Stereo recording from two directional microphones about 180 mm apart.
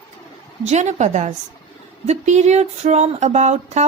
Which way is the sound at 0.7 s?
40° right (ahead or behind).